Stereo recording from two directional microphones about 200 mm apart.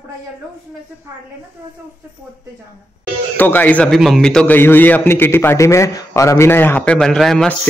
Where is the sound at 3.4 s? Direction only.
10° left (ahead or behind).